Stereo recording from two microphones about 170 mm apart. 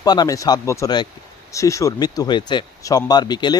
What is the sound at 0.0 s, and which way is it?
A man's voice, 25° left (ahead or behind).